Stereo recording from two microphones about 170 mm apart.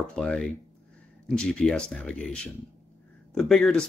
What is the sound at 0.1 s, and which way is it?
Speech, 5° left (ahead or behind).